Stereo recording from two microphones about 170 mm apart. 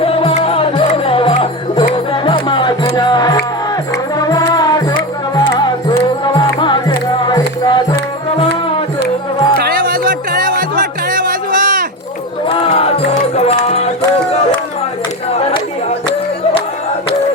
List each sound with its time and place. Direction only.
0.0 s music: 35° left (ahead or behind)
9.6 s music: 60° right (ahead or behind)
12.5 s music: 35° left (ahead or behind)
15.4 s a sound: 35° left (ahead or behind)